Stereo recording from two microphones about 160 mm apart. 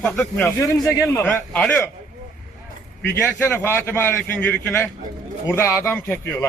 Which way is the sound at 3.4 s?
15° left (ahead or behind).